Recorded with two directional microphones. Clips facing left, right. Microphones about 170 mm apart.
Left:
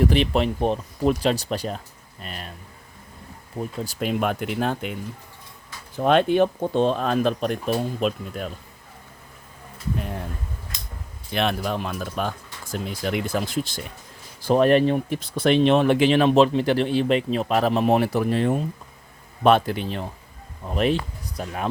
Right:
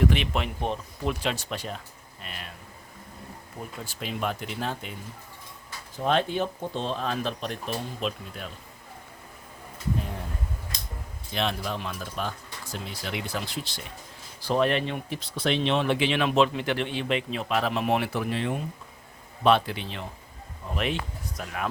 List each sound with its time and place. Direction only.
0.0 s speech: 35° left (ahead or behind)
3.8 s speech: 55° left (ahead or behind)
6.0 s speech: 65° left (ahead or behind)
11.3 s speech: 60° left (ahead or behind); by 21.7 s 30° left (ahead or behind)